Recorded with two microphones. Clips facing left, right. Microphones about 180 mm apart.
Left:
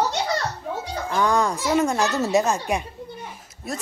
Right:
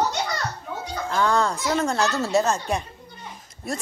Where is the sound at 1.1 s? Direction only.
15° left (ahead or behind).